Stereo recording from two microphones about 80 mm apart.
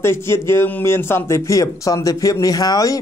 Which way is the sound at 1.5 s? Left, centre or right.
Left.